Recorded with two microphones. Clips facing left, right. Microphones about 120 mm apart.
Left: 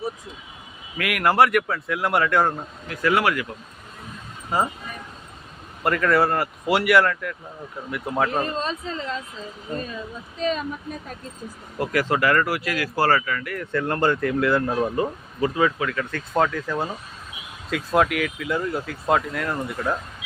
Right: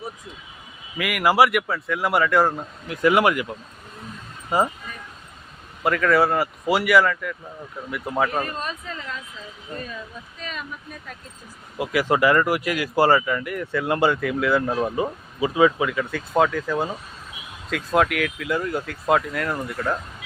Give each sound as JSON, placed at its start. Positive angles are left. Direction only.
{"t": 0.9, "sound": "speech", "side_deg": 0}
{"t": 2.9, "sound": "speech", "side_deg": -20}
{"t": 4.5, "sound": "speech", "side_deg": -15}
{"t": 5.8, "sound": "speech", "side_deg": 0}
{"t": 8.4, "sound": "a woman's voice", "side_deg": 25}
{"t": 10.4, "sound": "speech", "side_deg": 35}
{"t": 11.8, "sound": "speech", "side_deg": -10}